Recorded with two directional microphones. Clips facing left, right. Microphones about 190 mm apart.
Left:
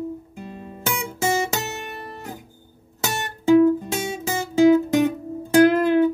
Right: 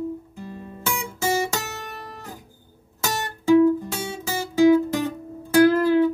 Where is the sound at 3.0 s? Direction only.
20° left (ahead or behind).